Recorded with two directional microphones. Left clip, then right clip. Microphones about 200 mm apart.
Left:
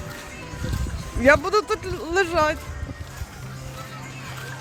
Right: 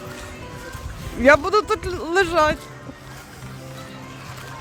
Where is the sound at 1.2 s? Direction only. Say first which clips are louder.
Right 2 dB; 15° right (ahead or behind).